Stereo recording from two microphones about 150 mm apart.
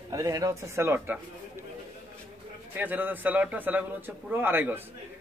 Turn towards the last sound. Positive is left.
turn(degrees=-15)  # may be behind; listen again after turning